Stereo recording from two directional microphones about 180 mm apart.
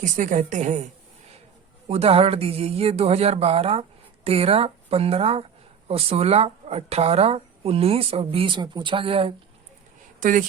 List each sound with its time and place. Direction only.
0.0 s a woman's voice: 45° right (ahead or behind)
1.9 s speech: 35° right (ahead or behind)
10.2 s speech: 45° right (ahead or behind)